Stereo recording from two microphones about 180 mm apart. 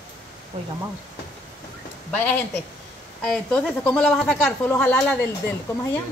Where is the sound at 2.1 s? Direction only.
10° left (ahead or behind).